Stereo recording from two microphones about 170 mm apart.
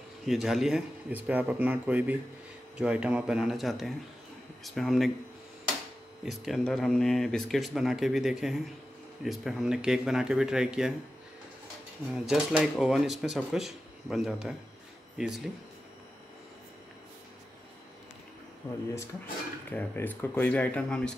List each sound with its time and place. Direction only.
0.3 s speech: centre (ahead or behind)
6.2 s speech: centre (ahead or behind)
12.3 s speech: 5° right (ahead or behind)
18.6 s speech: 15° left (ahead or behind)